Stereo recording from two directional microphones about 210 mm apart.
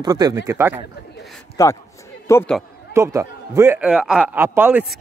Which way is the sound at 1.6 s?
15° left (ahead or behind).